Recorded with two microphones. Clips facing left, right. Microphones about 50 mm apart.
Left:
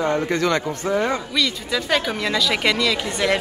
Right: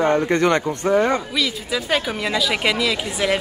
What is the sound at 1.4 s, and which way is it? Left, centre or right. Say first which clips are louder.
A woman's voice: even; centre.